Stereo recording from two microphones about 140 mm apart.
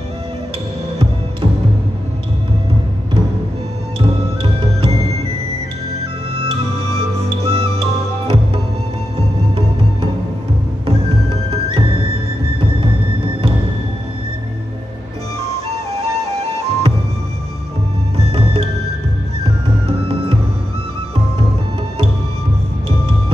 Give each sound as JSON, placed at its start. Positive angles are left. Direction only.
{"t": 4.0, "sound": "music", "side_deg": -45}
{"t": 7.0, "sound": "music", "side_deg": -45}
{"t": 10.9, "sound": "music", "side_deg": -45}
{"t": 15.5, "sound": "music", "side_deg": -45}
{"t": 18.1, "sound": "music", "side_deg": -45}